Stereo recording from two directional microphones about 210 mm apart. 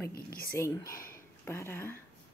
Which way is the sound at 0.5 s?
15° left (ahead or behind).